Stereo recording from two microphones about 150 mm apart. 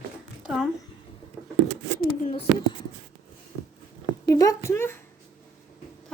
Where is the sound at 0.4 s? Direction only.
5° right (ahead or behind).